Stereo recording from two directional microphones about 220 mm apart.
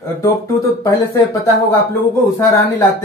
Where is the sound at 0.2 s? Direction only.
15° left (ahead or behind).